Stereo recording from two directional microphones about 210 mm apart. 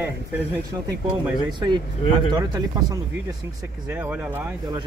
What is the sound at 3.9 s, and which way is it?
Speech, 10° right (ahead or behind).